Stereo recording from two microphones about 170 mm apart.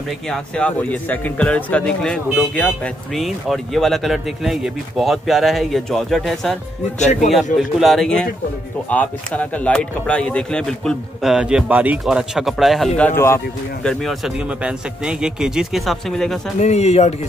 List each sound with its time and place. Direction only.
0.3 s speech: 5° left (ahead or behind)
7.0 s speech: 45° left (ahead or behind)
7.5 s speech: centre (ahead or behind)
13.8 s speech: centre (ahead or behind)
16.5 s speech: 40° left (ahead or behind)